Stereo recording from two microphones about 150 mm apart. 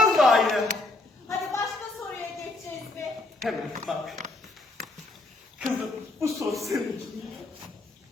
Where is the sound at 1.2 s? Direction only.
20° left (ahead or behind).